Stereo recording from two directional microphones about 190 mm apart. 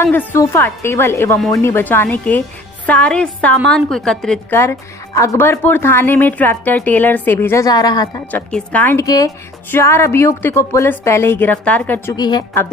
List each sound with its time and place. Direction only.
0.0 s a woman's voice: 10° left (ahead or behind)
8.3 s a woman's voice: 5° left (ahead or behind)
12.2 s a woman's voice: 20° left (ahead or behind)